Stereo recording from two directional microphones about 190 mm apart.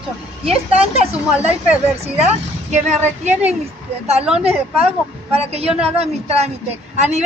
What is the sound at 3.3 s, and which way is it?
Speech, 10° right (ahead or behind).